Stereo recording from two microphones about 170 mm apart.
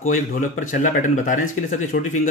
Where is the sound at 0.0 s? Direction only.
50° left (ahead or behind).